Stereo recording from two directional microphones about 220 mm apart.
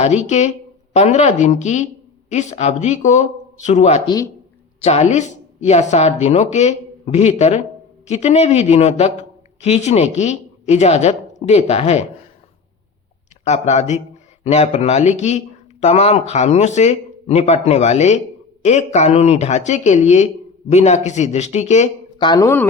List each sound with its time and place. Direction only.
0.0 s speech: 30° left (ahead or behind)
13.4 s speech: 30° left (ahead or behind)
22.3 s speech: 15° left (ahead or behind)